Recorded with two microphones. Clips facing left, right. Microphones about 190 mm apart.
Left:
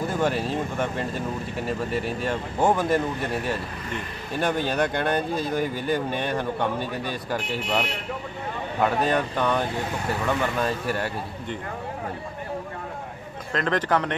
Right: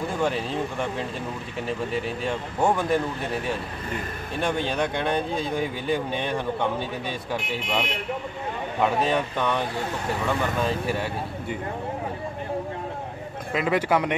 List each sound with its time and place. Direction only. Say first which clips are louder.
0.1 s speech: left 1 dB; centre (ahead or behind)
8.8 s speech: even; centre (ahead or behind)
13.5 s a man's voice: right 1 dB; 10° right (ahead or behind)